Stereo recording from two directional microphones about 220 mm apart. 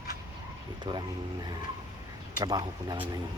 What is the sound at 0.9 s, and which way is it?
Speech, 20° right (ahead or behind).